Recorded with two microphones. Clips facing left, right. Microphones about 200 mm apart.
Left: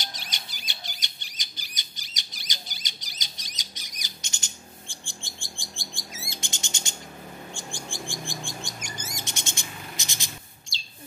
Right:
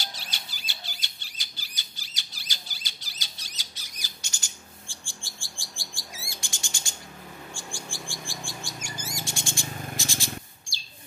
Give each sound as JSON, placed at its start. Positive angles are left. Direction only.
{"t": 0.0, "sound": "squeal", "side_deg": 20}
{"t": 7.5, "sound": "bird", "side_deg": 20}